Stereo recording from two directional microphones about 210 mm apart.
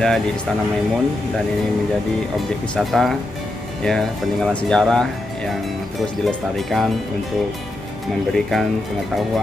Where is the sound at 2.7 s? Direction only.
Centre (ahead or behind).